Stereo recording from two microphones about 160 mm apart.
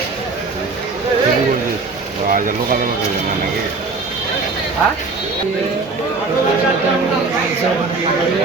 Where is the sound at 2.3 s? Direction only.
60° right (ahead or behind).